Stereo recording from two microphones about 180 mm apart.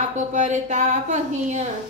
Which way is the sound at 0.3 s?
40° right (ahead or behind).